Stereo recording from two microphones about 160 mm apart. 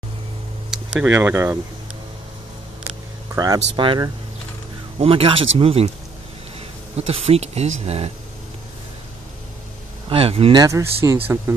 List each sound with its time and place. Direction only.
0.7 s speech: 10° right (ahead or behind)
3.3 s speech: 25° right (ahead or behind)
7.0 s speech: 40° right (ahead or behind)
10.0 s speech: 35° right (ahead or behind)
10.6 s speech: 15° right (ahead or behind)